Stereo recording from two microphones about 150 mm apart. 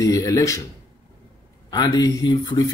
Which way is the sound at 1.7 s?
25° left (ahead or behind).